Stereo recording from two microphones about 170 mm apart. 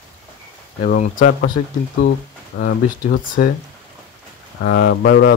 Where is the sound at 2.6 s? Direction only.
60° left (ahead or behind).